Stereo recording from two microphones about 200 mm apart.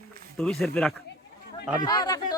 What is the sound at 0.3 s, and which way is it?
Speech, 5° left (ahead or behind).